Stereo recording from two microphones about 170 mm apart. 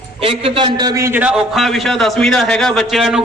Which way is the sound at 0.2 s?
35° right (ahead or behind).